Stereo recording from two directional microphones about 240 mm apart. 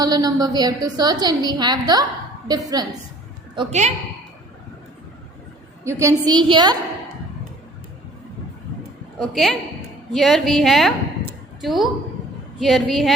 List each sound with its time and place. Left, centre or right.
0.0 s a woman's voice: centre
5.8 s a woman's voice: centre
9.3 s a woman's voice: centre